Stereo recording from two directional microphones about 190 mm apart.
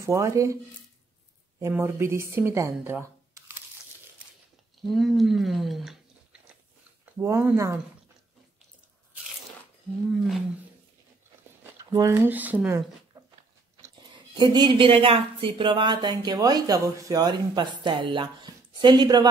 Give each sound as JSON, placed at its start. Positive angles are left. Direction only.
{"t": 0.0, "sound": "speech", "side_deg": -15}
{"t": 1.6, "sound": "speech", "side_deg": -15}
{"t": 4.8, "sound": "speech", "side_deg": 0}
{"t": 7.2, "sound": "speech", "side_deg": -15}
{"t": 11.8, "sound": "speech", "side_deg": -20}
{"t": 14.4, "sound": "speech", "side_deg": -25}